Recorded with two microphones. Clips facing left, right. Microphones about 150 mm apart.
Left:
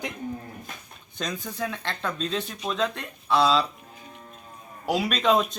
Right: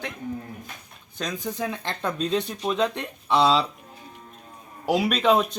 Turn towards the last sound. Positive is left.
turn(degrees=-10)  # may be behind; listen again after turning